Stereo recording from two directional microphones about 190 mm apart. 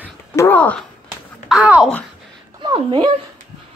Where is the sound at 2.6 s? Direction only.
25° right (ahead or behind).